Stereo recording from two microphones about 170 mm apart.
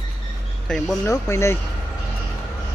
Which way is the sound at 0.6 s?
5° left (ahead or behind).